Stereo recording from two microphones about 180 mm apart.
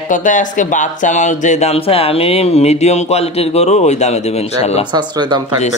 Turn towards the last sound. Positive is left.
turn(degrees=-25)  # may be behind; listen again after turning